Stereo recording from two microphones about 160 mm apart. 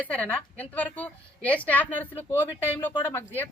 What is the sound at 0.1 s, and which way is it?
A woman's voice, 10° left (ahead or behind).